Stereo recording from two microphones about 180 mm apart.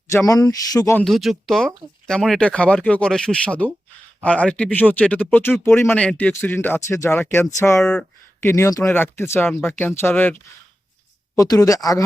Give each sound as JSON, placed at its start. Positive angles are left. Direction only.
{"t": 0.3, "sound": "speech", "side_deg": 20}
{"t": 0.9, "sound": "speech", "side_deg": 0}
{"t": 11.3, "sound": "speech", "side_deg": 20}